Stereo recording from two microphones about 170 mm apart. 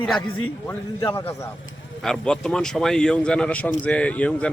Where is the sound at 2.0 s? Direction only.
5° left (ahead or behind).